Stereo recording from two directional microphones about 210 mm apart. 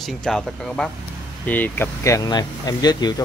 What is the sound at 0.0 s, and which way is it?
Speech, centre (ahead or behind).